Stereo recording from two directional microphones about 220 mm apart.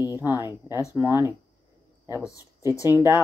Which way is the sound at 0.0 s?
15° left (ahead or behind).